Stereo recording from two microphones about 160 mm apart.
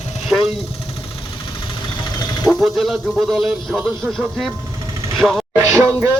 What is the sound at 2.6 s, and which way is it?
A man's voice, centre (ahead or behind).